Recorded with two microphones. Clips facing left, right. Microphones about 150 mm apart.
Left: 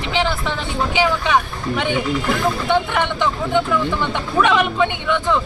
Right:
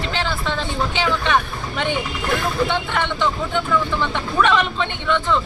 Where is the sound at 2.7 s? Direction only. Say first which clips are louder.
Left 4 dB; 15° left (ahead or behind).